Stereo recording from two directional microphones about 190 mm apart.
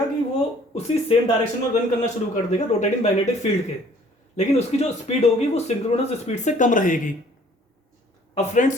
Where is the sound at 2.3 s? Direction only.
40° left (ahead or behind).